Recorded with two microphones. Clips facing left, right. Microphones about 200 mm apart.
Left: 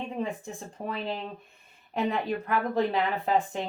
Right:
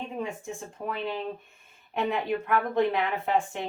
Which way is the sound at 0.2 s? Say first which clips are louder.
Left 1 dB; 35° left (ahead or behind).